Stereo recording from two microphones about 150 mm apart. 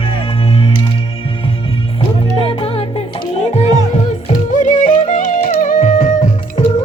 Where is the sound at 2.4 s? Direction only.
40° left (ahead or behind).